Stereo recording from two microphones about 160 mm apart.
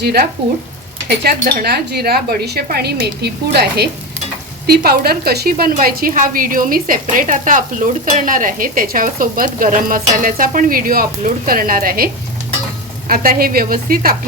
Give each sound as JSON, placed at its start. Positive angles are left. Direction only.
{"t": 0.0, "sound": "speech", "side_deg": -80}
{"t": 4.6, "sound": "a woman's voice", "side_deg": -75}